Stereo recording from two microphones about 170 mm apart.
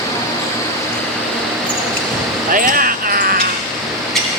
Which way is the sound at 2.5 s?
55° right (ahead or behind).